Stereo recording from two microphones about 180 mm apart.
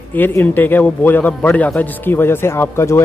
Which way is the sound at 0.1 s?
10° left (ahead or behind).